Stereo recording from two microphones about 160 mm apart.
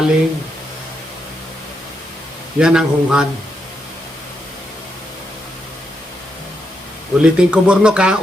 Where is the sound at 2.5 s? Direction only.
5° right (ahead or behind).